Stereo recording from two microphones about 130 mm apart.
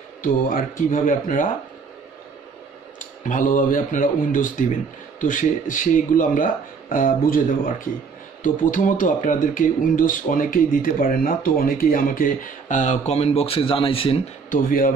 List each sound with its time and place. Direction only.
0.2 s speech: 90° left
3.0 s speech: 85° left; by 14.2 s 45° left (ahead or behind)
14.5 s speech: 90° left